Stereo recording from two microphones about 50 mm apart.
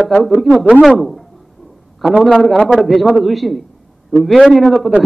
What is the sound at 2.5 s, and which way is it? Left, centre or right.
Speech, centre.